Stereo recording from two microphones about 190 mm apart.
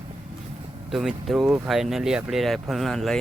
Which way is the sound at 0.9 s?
Centre (ahead or behind).